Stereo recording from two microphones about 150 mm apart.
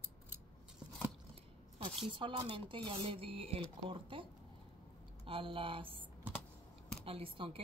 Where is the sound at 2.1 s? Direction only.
35° right (ahead or behind).